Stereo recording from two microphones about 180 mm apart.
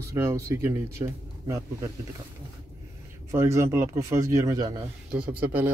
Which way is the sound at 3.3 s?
15° right (ahead or behind).